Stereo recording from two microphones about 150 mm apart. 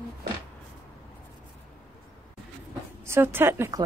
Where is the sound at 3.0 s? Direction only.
15° right (ahead or behind).